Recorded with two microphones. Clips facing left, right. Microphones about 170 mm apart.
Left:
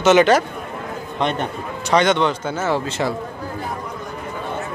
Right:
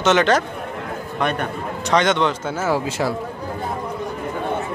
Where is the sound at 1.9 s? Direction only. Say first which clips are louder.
Left 1 dB; centre (ahead or behind).